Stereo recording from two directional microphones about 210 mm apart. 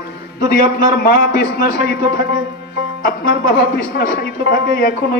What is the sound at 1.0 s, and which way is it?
A woman's voice, 50° left (ahead or behind).